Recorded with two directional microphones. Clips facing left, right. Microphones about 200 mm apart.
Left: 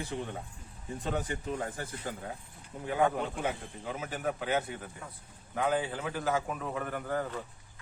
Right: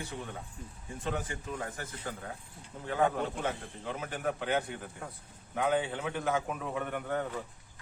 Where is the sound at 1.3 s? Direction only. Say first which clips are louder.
Left 3 dB; 25° left (ahead or behind).